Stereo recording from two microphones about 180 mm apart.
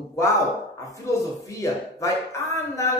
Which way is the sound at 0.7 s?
20° left (ahead or behind).